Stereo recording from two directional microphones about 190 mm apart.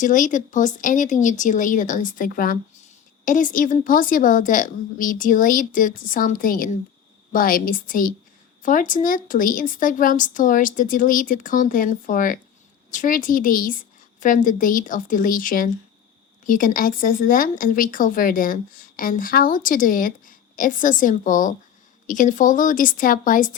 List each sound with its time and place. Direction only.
0.0 s speech: 40° left (ahead or behind)